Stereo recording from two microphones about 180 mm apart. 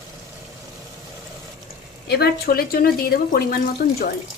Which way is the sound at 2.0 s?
65° left (ahead or behind).